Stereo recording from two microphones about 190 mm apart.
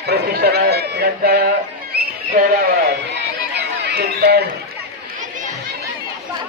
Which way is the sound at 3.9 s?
55° right (ahead or behind).